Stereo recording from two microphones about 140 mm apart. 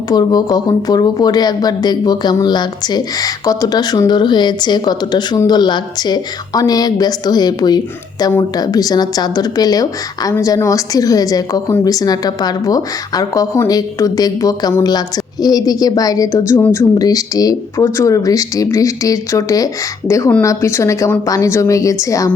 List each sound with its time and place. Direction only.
0.1 s a woman's voice: 30° left (ahead or behind)